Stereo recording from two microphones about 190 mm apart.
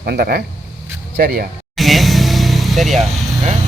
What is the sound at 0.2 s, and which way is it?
Speech, 55° right (ahead or behind).